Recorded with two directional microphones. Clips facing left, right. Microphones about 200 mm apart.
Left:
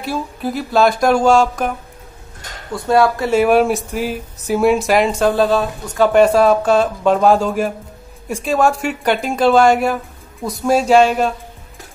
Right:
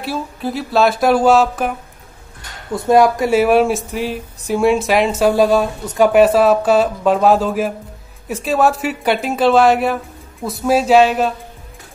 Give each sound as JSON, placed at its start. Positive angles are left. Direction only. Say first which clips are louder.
{"t": 0.0, "sound": "speech", "louder": "even", "side_deg": 0}
{"t": 2.7, "sound": "speech", "louder": "right 2 dB", "side_deg": -20}
{"t": 3.3, "sound": "speech", "louder": "left 1 dB", "side_deg": 0}